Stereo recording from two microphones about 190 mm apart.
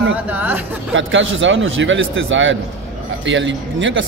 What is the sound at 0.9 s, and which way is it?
Speech, 90° right.